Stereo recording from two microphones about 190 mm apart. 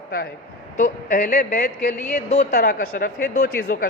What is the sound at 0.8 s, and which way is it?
A woman's voice, 40° left (ahead or behind).